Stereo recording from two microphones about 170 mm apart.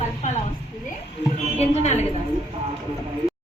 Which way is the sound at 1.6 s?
40° left (ahead or behind).